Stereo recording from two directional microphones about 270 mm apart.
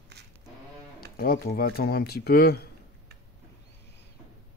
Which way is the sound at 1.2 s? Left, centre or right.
Left.